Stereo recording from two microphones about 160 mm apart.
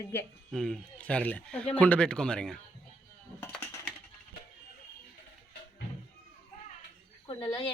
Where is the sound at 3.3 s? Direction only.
10° left (ahead or behind).